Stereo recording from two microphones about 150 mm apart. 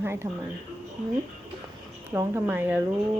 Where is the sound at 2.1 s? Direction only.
15° right (ahead or behind).